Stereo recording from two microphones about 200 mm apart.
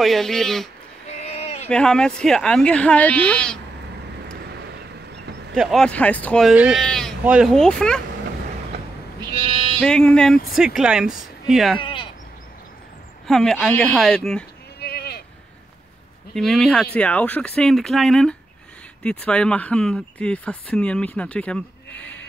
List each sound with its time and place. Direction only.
0.0 s speech: centre (ahead or behind)
1.0 s a sound: 30° left (ahead or behind)
1.7 s speech: 5° left (ahead or behind)
4.5 s vehicle: 55° right (ahead or behind)
5.5 s speech: centre (ahead or behind)
9.8 s speech: 5° left (ahead or behind)
11.8 s sheep: 25° left (ahead or behind)
13.3 s speech: 5° left (ahead or behind)
14.8 s sheep: 50° left (ahead or behind)
16.3 s speech: centre (ahead or behind)